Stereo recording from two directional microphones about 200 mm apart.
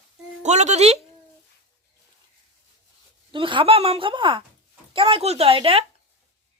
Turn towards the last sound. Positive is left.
turn(degrees=-30)  # may be behind; listen again after turning